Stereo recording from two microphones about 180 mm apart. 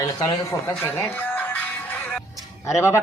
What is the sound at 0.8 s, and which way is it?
Music, 10° left (ahead or behind).